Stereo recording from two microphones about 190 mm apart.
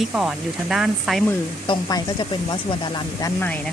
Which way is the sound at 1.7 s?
20° left (ahead or behind).